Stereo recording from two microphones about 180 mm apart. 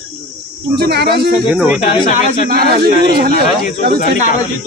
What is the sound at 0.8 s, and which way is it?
Speech, 65° right (ahead or behind).